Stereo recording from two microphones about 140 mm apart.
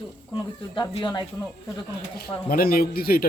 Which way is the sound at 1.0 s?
30° left (ahead or behind).